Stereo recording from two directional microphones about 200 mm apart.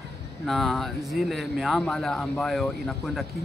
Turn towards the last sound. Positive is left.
turn(degrees=5)  # may be behind; listen again after turning